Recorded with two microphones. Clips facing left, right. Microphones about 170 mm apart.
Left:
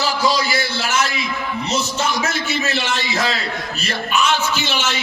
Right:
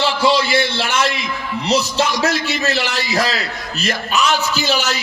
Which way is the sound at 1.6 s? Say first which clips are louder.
Right 7 dB; 35° right (ahead or behind).